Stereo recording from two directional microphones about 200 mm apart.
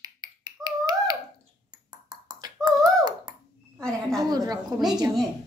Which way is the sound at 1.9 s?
20° right (ahead or behind).